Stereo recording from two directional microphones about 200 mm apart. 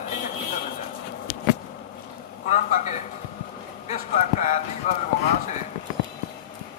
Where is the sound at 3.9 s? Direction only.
35° left (ahead or behind).